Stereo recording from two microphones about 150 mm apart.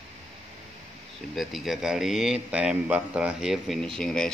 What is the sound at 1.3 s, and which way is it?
A man's voice, centre (ahead or behind).